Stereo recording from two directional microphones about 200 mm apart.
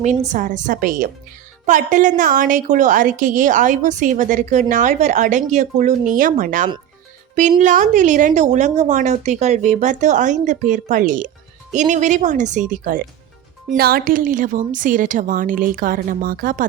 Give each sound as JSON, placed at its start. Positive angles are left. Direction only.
{"t": 0.0, "sound": "a woman's voice", "side_deg": -40}